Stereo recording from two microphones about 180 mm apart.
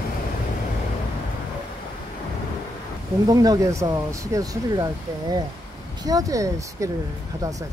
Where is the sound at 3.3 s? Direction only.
20° right (ahead or behind).